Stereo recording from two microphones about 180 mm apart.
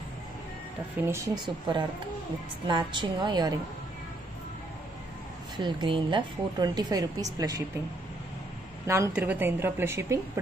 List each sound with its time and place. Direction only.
0.9 s a woman's voice: 15° right (ahead or behind)
5.6 s a woman's voice: 25° right (ahead or behind)
8.8 s a woman's voice: 15° right (ahead or behind)